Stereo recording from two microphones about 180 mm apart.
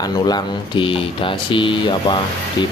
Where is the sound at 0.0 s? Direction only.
25° left (ahead or behind).